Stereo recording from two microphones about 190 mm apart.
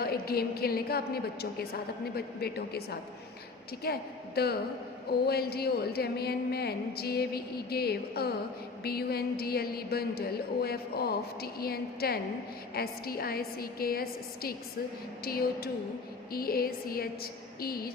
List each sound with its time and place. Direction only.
0.0 s a woman's voice: 55° left (ahead or behind)